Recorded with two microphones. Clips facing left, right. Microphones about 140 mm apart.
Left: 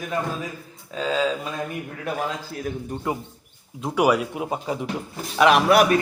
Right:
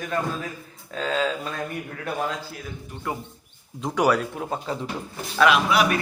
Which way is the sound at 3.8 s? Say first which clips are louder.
Left 1 dB; 10° left (ahead or behind).